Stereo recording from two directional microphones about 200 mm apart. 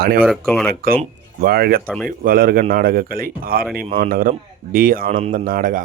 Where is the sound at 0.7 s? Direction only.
50° right (ahead or behind).